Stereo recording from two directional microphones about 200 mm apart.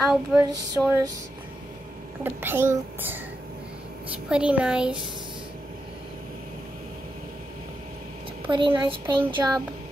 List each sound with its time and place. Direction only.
0.0 s speech: centre (ahead or behind)
0.5 s a child's voice: 15° right (ahead or behind)
2.2 s a child's voice: 10° right (ahead or behind)
4.3 s speech: 5° right (ahead or behind)
8.5 s a woman's voice: 25° right (ahead or behind)